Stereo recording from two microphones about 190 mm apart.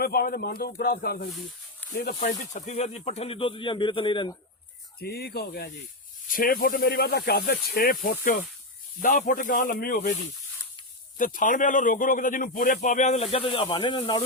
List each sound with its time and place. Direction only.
0.0 s a man's voice: 50° left (ahead or behind); by 4.4 s 25° left (ahead or behind)
4.9 s a man's voice: 55° left (ahead or behind)
11.2 s a man's voice: 45° left (ahead or behind); by 14.3 s 25° left (ahead or behind)